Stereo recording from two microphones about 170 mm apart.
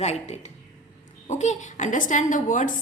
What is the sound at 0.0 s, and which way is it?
A woman's voice, 40° left (ahead or behind).